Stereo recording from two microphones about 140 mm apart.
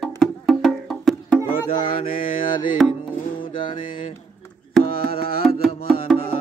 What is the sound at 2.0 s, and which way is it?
Mantra, 40° left (ahead or behind).